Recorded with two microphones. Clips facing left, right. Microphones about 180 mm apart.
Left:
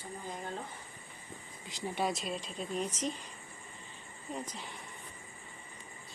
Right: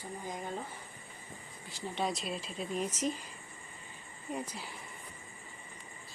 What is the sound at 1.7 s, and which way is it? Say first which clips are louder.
Speech: left 2 dB; 15° left (ahead or behind).